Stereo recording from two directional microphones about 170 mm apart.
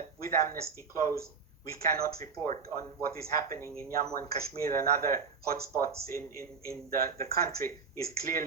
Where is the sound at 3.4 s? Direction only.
15° left (ahead or behind).